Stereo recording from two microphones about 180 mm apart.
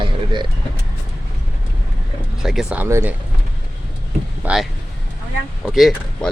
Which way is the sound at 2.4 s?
Centre (ahead or behind).